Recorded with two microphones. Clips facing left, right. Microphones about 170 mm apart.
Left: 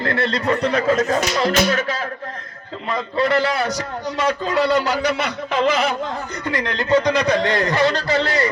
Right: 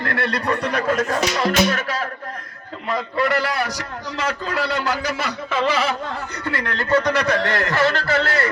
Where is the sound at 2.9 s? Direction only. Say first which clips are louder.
Left 2 dB; 25° left (ahead or behind).